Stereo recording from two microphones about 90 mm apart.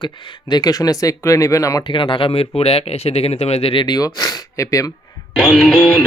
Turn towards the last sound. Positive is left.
turn(degrees=5)  # may be behind; listen again after turning